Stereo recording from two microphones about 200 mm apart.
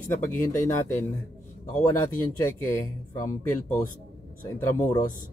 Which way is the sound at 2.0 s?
10° left (ahead or behind).